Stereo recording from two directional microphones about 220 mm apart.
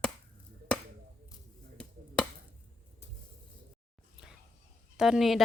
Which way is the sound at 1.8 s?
5° left (ahead or behind).